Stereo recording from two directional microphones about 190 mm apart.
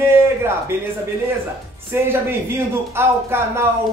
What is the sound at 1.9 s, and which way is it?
Speech, 10° right (ahead or behind).